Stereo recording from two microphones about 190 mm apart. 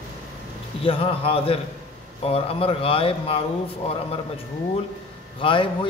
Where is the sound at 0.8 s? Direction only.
30° left (ahead or behind).